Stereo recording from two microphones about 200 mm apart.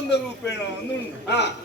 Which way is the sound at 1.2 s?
60° left (ahead or behind).